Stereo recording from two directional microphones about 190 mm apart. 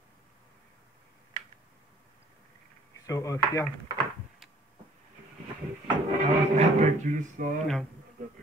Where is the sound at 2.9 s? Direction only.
15° left (ahead or behind).